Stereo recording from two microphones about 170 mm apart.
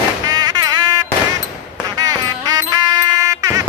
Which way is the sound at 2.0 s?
25° right (ahead or behind).